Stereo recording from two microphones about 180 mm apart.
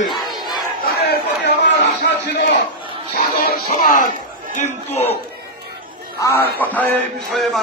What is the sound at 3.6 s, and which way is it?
Speech, 45° left (ahead or behind).